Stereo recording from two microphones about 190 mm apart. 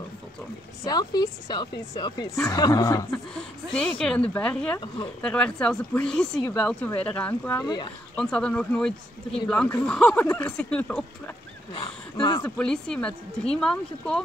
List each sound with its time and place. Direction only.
0.8 s a woman's voice: 20° left (ahead or behind)
3.1 s speech: 5° left (ahead or behind); by 7.9 s 20° left (ahead or behind)
8.2 s speech: 5° left (ahead or behind)
11.7 s speech: 25° left (ahead or behind)
12.4 s speech: 5° left (ahead or behind)